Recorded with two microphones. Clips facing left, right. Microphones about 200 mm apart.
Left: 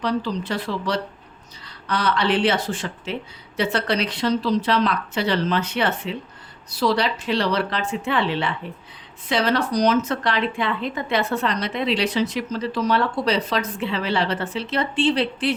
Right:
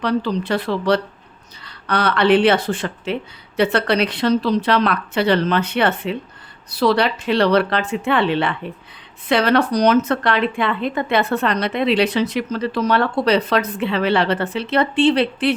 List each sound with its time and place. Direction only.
0.0 s speech: 60° right (ahead or behind)